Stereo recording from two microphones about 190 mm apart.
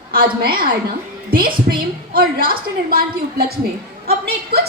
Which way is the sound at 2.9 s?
50° right (ahead or behind).